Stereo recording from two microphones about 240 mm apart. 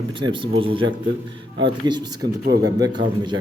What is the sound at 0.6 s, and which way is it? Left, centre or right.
A man's voice, right.